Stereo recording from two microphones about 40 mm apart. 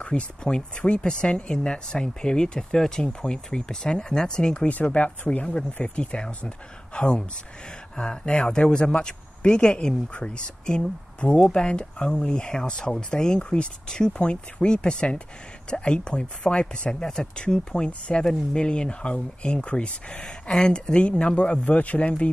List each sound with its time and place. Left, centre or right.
0.4 s speech: centre
4.6 s speech: left
17.0 s speech: centre
20.2 s speech: centre